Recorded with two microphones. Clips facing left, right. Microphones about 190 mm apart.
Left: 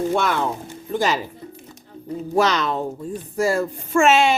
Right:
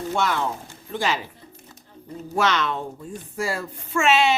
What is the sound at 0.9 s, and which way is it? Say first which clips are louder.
Speech: left 4 dB; 40° left (ahead or behind).